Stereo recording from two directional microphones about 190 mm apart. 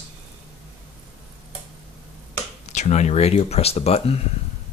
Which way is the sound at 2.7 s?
35° left (ahead or behind).